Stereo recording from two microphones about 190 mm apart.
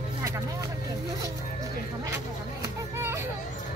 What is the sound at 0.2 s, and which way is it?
Vehicle, 15° right (ahead or behind).